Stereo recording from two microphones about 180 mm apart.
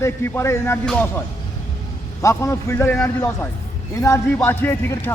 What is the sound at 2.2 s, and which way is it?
A man's voice, 15° left (ahead or behind).